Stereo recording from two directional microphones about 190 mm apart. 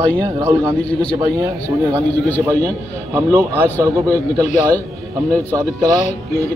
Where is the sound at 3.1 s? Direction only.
15° right (ahead or behind).